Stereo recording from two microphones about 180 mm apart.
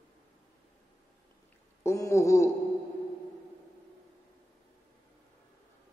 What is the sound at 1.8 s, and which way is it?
Speech, 15° left (ahead or behind).